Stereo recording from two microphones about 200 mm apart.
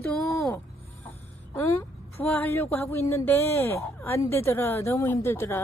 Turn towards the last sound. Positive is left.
turn(degrees=10)  # may be behind; listen again after turning